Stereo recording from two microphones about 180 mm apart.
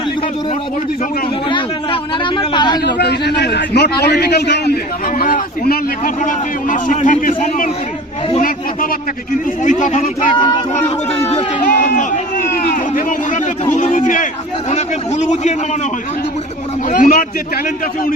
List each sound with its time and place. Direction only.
1.5 s speech: 25° left (ahead or behind)
2.8 s a man's voice: 65° left (ahead or behind); by 10.3 s 45° left (ahead or behind)
10.3 s speech: 25° left (ahead or behind)
11.6 s a man's voice: 50° left (ahead or behind)
16.9 s a man's voice: 50° left (ahead or behind)